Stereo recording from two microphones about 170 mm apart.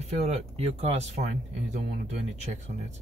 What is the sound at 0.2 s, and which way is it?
Speech, 40° right (ahead or behind).